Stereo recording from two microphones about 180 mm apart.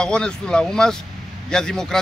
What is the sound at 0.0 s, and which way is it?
Speech, 5° left (ahead or behind).